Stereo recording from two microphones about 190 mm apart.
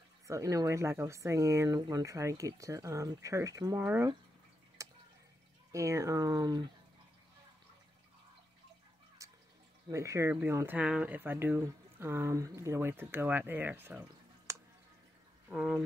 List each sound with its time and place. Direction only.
0.3 s speech: 15° right (ahead or behind)
4.8 s drip: 15° right (ahead or behind)
5.7 s speech: 15° right (ahead or behind)
9.2 s music: 15° right (ahead or behind)
9.8 s speech: 15° right (ahead or behind)
14.5 s a sound: 15° right (ahead or behind)
15.5 s speech: 5° right (ahead or behind)